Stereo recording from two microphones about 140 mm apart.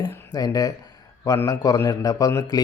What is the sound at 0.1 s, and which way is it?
Speech, 25° left (ahead or behind).